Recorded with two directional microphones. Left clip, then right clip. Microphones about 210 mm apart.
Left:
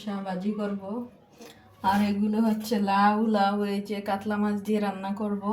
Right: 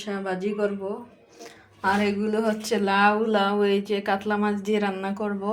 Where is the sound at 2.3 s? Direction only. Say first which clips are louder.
Right 4 dB; 25° right (ahead or behind).